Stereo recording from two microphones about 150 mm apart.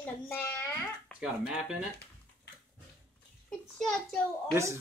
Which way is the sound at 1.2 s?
5° right (ahead or behind).